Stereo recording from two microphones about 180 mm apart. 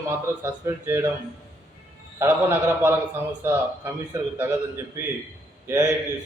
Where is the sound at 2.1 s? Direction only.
15° right (ahead or behind).